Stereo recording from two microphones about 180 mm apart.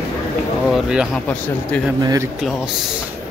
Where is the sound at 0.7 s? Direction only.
Centre (ahead or behind).